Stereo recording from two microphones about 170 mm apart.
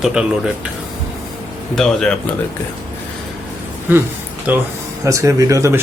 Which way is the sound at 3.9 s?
10° right (ahead or behind).